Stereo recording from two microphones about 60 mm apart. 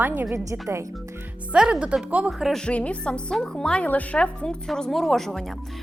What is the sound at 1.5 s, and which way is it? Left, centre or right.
Speech, centre.